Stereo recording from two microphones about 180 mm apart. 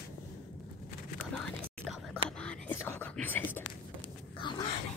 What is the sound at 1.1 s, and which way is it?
Whispering, 5° left (ahead or behind).